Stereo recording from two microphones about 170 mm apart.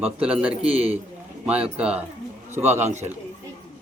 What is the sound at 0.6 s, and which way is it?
Speech, 35° right (ahead or behind).